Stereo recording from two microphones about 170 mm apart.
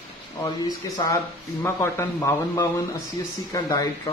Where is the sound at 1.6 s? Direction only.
15° left (ahead or behind).